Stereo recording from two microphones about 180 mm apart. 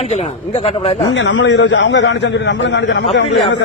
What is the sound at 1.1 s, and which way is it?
A man's voice, 90° left.